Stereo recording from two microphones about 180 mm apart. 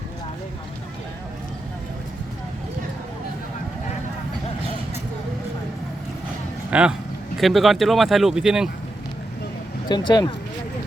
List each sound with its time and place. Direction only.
6.7 s speech: 5° right (ahead or behind)
9.9 s speech: 25° left (ahead or behind)